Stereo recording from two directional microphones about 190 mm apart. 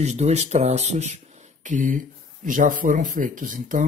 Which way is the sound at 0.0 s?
35° right (ahead or behind).